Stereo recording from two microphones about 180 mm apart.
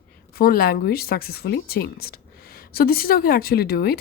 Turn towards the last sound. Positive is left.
turn(degrees=60)  # may be behind; listen again after turning